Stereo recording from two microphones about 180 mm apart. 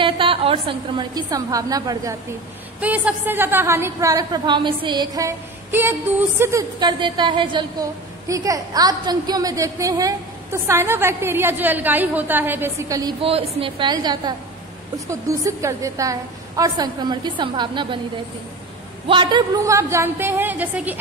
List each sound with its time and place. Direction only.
0.0 s a woman's voice: 30° right (ahead or behind)
2.8 s a woman's voice: 10° right (ahead or behind)
13.2 s a woman's voice: 30° right (ahead or behind)
19.0 s a woman's voice: 25° right (ahead or behind); by 21.0 s 10° right (ahead or behind)